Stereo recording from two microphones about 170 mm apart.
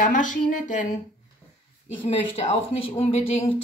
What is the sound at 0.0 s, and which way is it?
Speech, 50° left (ahead or behind).